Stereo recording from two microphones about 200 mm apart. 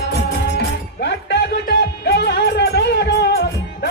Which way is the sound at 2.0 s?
55° left (ahead or behind).